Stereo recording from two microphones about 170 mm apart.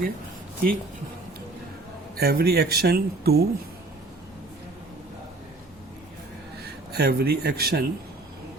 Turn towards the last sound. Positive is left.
turn(degrees=-65)  # may be behind; listen again after turning